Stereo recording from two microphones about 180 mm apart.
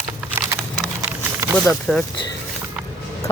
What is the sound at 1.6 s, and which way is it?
Speech, 5° left (ahead or behind).